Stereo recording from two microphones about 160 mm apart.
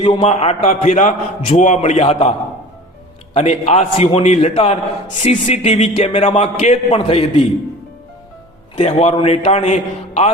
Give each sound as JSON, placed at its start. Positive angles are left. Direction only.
{"t": 0.0, "sound": "a man's voice", "side_deg": 35}
{"t": 3.3, "sound": "a man's voice", "side_deg": 45}
{"t": 8.7, "sound": "a man's voice", "side_deg": 45}